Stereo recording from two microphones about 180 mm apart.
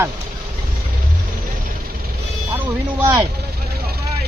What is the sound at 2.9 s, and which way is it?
Speech, 10° right (ahead or behind).